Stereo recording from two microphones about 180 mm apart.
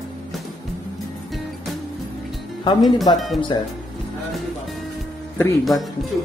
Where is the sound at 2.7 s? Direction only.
20° left (ahead or behind).